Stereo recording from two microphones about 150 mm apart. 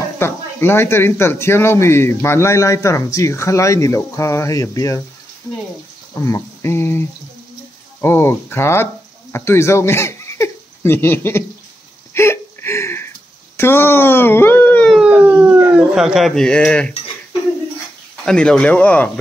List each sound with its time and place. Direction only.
0.2 s speech: 15° left (ahead or behind)
6.2 s speech: 20° left (ahead or behind)
12.1 s a sound: 15° left (ahead or behind)
13.6 s speech: 15° left (ahead or behind)
14.9 s a sound: 5° right (ahead or behind)
18.2 s speech: 5° left (ahead or behind)